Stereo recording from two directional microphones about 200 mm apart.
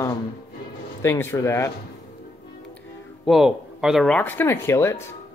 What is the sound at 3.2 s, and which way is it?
Speech, centre (ahead or behind).